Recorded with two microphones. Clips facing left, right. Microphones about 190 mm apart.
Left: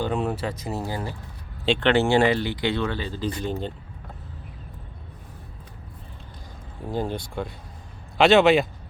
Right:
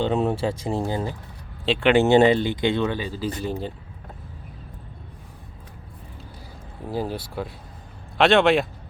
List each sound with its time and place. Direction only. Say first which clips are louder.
0.0 s speech: right 4 dB; 25° right (ahead or behind)
1.6 s speech: even; 5° right (ahead or behind)
1.9 s speech: right 4 dB; 20° right (ahead or behind)
6.9 s speech: even; 5° right (ahead or behind)